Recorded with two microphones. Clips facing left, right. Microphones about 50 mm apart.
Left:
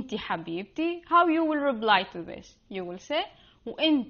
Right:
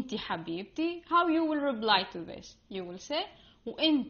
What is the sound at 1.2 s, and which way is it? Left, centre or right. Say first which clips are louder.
Speech: left 2 dB; left.